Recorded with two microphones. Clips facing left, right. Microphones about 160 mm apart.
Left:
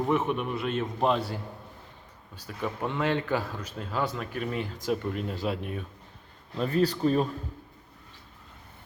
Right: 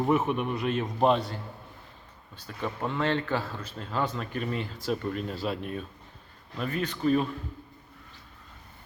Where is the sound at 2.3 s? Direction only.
10° left (ahead or behind).